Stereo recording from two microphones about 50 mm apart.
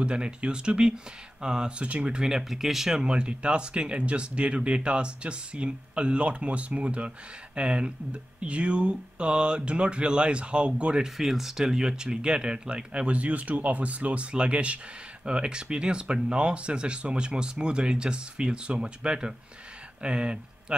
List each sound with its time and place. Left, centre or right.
0.0 s speech: centre
2.2 s speech: centre
11.1 s speech: centre